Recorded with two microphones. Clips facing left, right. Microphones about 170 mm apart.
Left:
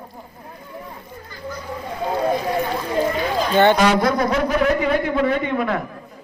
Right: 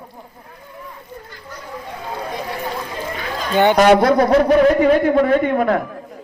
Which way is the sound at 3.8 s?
60° right (ahead or behind).